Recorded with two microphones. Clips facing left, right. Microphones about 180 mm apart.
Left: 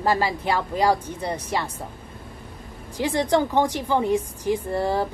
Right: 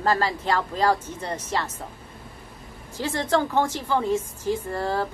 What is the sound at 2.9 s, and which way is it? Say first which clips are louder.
A woman's voice: left 3 dB; 15° left (ahead or behind).